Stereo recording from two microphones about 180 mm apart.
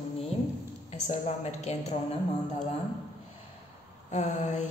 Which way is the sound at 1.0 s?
40° left (ahead or behind).